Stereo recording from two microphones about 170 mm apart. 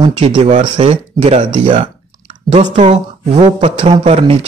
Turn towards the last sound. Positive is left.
turn(degrees=-35)  # may be behind; listen again after turning